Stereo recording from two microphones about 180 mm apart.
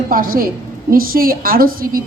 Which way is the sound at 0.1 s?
50° right (ahead or behind).